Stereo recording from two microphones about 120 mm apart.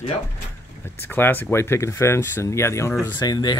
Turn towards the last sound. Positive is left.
turn(degrees=35)  # may be behind; listen again after turning